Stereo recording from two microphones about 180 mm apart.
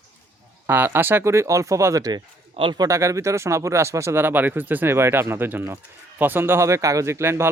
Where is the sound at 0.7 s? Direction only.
10° right (ahead or behind).